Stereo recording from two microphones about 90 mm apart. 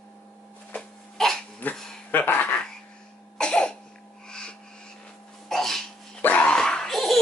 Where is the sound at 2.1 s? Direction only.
20° left (ahead or behind).